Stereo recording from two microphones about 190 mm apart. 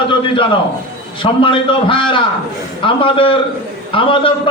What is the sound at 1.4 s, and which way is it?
A man's voice, 25° left (ahead or behind).